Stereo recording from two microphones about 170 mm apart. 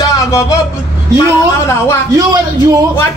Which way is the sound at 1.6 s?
15° left (ahead or behind).